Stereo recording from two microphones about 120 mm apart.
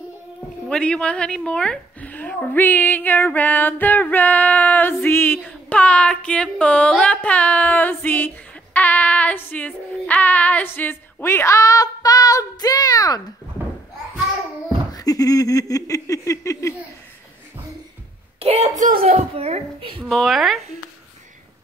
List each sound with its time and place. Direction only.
0.7 s a woman's voice: 10° left (ahead or behind)
8.7 s female singing: 15° left (ahead or behind); by 13.2 s 30° left (ahead or behind)
14.9 s a sound: 30° left (ahead or behind)
18.4 s a child's voice: 65° right (ahead or behind); by 19.2 s 80° right
19.3 s a child's voice: 55° right (ahead or behind)
20.1 s a woman's voice: centre (ahead or behind)